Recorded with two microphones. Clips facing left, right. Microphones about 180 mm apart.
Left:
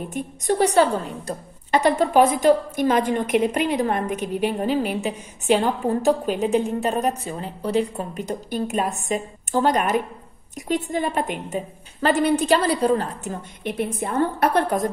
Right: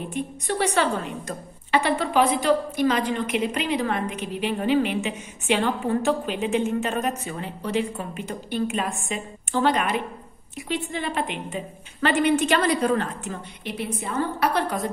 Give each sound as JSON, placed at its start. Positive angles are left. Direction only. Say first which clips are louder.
{"t": 0.1, "sound": "a woman's voice", "louder": "left 6 dB", "side_deg": 40}